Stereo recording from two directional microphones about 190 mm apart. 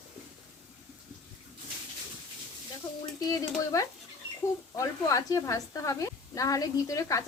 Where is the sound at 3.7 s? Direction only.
15° left (ahead or behind).